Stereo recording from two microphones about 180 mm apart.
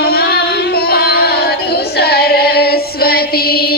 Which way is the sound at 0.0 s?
60° left (ahead or behind).